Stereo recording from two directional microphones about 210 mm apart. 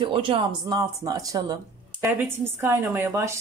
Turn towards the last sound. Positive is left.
turn(degrees=-10)  # may be behind; listen again after turning